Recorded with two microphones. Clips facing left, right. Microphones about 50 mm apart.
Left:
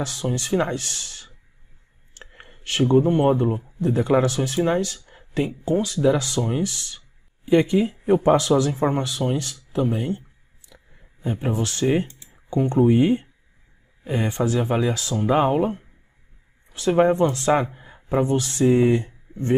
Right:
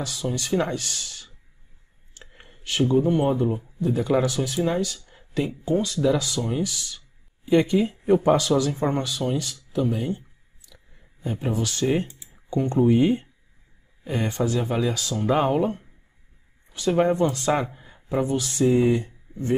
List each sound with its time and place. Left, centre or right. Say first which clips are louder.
0.0 s speech: left 2 dB; left
0.8 s a sound: even; left
2.3 s a sound: left 1 dB; centre
2.8 s speech: left 3 dB; left
4.5 s speech: left 3 dB; left; by 6.1 s centre
6.1 s speech: left 2 dB; left
7.4 s speech: left 2 dB; centre
10.6 s clicking: left 3 dB; left
11.0 s speech: left 3 dB; centre
12.3 s computer keyboard: left 2 dB; centre
12.8 s speech: left 1 dB; centre
17.5 s a sound: left 3 dB; centre
18.2 s speech: left 2 dB; left
19.3 s a sound: left 2 dB; left